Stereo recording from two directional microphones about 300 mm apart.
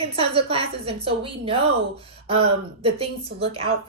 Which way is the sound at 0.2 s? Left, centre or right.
Centre.